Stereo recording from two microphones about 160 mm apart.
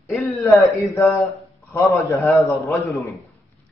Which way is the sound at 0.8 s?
20° left (ahead or behind).